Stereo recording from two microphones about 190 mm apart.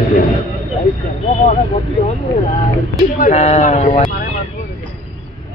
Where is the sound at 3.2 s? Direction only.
35° left (ahead or behind).